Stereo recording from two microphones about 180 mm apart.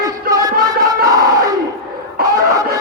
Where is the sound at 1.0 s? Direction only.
20° right (ahead or behind).